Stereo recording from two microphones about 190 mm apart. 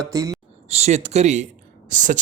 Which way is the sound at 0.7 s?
35° right (ahead or behind).